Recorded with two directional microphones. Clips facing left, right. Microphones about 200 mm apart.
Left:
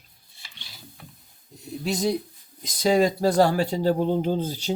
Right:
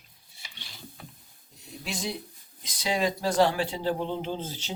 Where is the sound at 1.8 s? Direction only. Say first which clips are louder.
Left 9 dB; 40° left (ahead or behind).